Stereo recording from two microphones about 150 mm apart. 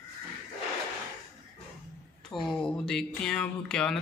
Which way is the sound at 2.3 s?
Centre (ahead or behind).